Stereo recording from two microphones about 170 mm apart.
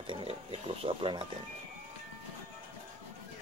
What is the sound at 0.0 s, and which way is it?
Speech, 30° right (ahead or behind).